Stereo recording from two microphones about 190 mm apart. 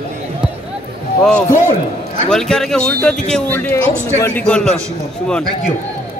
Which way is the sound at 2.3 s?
Centre (ahead or behind).